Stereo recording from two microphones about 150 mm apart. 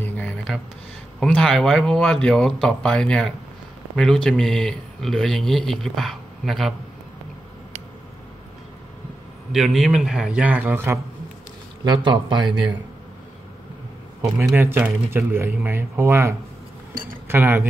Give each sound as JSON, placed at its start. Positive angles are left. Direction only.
{"t": 0.0, "sound": "a sound", "side_deg": 10}
{"t": 1.2, "sound": "speech", "side_deg": 5}
{"t": 9.5, "sound": "speech", "side_deg": 0}
{"t": 11.8, "sound": "speech", "side_deg": -30}
{"t": 14.4, "sound": "speech", "side_deg": -15}
{"t": 16.9, "sound": "cutlery", "side_deg": -70}
{"t": 17.3, "sound": "speech", "side_deg": -15}